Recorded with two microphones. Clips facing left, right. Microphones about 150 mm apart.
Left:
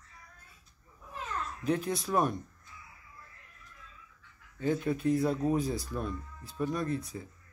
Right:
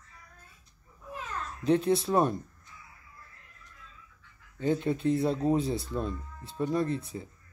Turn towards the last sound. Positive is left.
turn(degrees=-25)  # may be behind; listen again after turning